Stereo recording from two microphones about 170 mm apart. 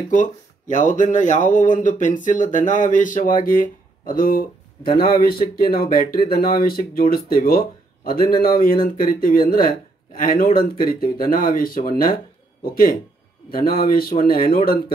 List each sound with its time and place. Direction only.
0.1 s speech: 45° left (ahead or behind)
13.5 s speech: 60° left (ahead or behind)